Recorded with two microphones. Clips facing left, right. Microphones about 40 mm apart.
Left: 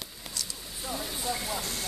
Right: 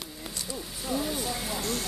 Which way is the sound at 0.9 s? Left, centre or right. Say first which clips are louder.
Right 3 dB; centre.